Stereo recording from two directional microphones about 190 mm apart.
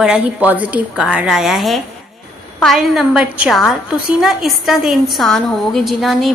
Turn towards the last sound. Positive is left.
turn(degrees=0)  # may be behind; listen again after turning